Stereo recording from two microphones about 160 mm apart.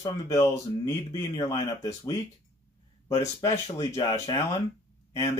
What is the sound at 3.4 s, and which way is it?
Speech, 20° left (ahead or behind).